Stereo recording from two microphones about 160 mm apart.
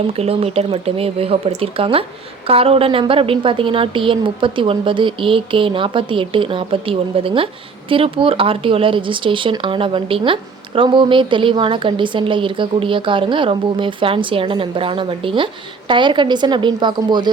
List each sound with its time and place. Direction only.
0.2 s a woman's voice: 40° right (ahead or behind)